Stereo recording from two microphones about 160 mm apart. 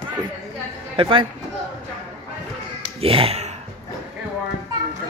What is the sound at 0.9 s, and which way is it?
Speech, 35° right (ahead or behind).